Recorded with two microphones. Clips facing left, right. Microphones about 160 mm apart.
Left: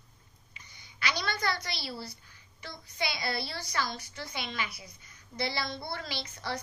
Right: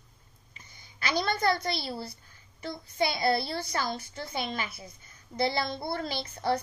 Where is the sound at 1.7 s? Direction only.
50° right (ahead or behind).